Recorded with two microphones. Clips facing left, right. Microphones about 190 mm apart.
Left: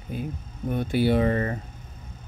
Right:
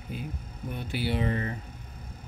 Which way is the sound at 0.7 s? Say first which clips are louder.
Left 9 dB; 50° left (ahead or behind).